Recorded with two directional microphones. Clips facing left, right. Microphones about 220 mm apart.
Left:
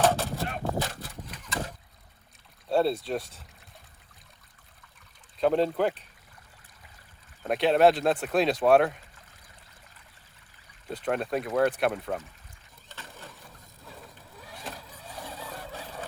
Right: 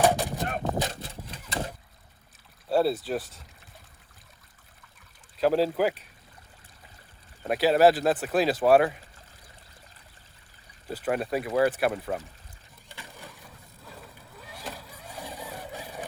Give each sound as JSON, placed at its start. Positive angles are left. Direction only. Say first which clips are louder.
{"t": 0.0, "sound": "a sound", "louder": "right 1 dB", "side_deg": -15}
{"t": 2.6, "sound": "speech", "louder": "right 1 dB", "side_deg": -5}
{"t": 5.4, "sound": "speech", "louder": "right 1 dB", "side_deg": -5}
{"t": 7.4, "sound": "speech", "louder": "right 1 dB", "side_deg": -5}
{"t": 10.8, "sound": "speech", "louder": "right 1 dB", "side_deg": -5}
{"t": 12.9, "sound": "a sound", "louder": "even", "side_deg": -10}
{"t": 13.8, "sound": "vehicle", "louder": "even", "side_deg": -5}